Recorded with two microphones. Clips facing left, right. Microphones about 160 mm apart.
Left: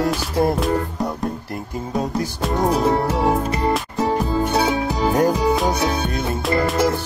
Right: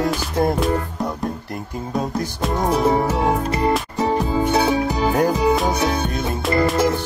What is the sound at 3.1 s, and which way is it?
Music, centre (ahead or behind).